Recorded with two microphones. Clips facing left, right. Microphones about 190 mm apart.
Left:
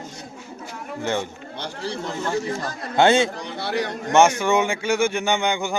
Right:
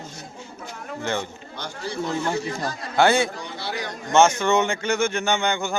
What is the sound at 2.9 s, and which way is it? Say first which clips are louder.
Speech: left 2 dB; 25° left (ahead or behind).